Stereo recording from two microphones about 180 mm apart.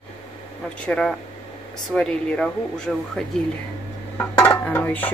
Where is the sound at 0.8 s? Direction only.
5° left (ahead or behind).